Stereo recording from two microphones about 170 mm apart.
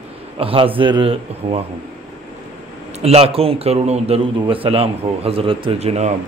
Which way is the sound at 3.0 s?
35° right (ahead or behind).